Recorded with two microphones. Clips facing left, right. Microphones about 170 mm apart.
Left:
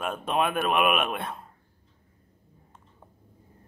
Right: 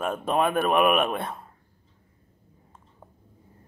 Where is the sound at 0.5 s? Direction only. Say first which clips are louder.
Right 3 dB; 20° right (ahead or behind).